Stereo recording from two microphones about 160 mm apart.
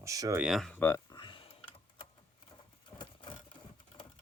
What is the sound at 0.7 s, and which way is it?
Speech, 15° left (ahead or behind).